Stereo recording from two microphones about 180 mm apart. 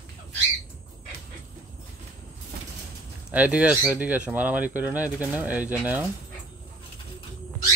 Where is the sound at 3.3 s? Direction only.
5° right (ahead or behind).